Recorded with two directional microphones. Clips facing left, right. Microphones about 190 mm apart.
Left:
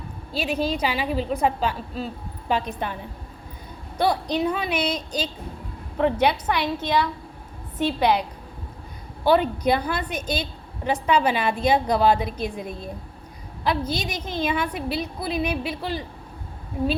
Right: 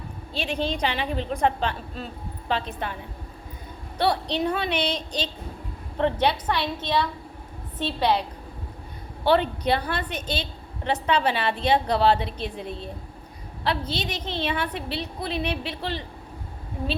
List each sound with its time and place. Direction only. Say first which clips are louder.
0.3 s a woman's voice: left 3 dB; 10° left (ahead or behind)
3.9 s a woman's voice: left 2 dB; 10° left (ahead or behind)
9.2 s a woman's voice: left 2 dB; 10° left (ahead or behind)